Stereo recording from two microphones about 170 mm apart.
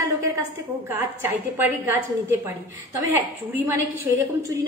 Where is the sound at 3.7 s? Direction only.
15° right (ahead or behind).